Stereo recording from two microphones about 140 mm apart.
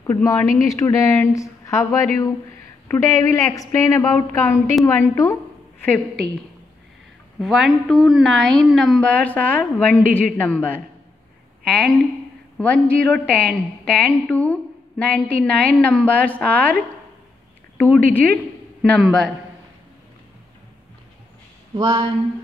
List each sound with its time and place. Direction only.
0.0 s a woman's voice: 25° left (ahead or behind)
7.3 s a woman's voice: centre (ahead or behind)
21.7 s speech: 30° right (ahead or behind)